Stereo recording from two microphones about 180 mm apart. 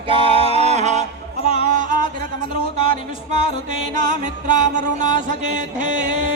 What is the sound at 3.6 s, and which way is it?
Music, 45° right (ahead or behind).